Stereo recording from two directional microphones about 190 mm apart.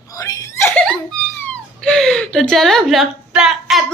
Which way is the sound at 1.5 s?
5° left (ahead or behind).